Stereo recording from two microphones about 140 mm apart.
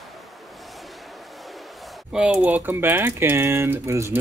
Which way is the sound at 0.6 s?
Centre (ahead or behind).